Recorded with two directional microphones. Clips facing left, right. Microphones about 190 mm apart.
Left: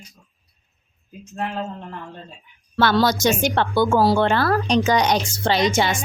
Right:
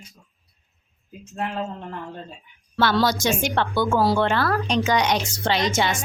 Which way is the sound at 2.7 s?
50° left (ahead or behind).